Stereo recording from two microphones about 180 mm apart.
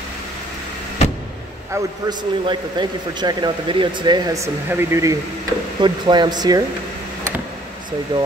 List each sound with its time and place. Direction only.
1.7 s a man's voice: 25° right (ahead or behind)
5.8 s a man's voice: 25° right (ahead or behind)
8.1 s a man's voice: 25° right (ahead or behind)